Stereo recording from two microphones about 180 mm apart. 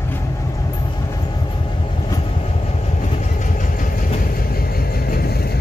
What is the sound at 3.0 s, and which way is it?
Vehicle, 45° left (ahead or behind).